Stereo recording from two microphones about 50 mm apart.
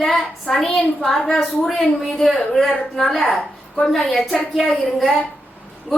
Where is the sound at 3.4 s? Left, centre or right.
Left.